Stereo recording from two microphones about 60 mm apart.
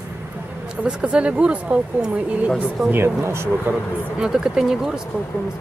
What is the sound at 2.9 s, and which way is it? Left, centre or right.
Speech, right.